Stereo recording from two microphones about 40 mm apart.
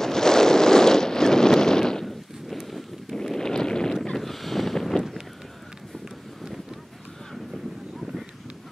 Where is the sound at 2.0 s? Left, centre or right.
Centre.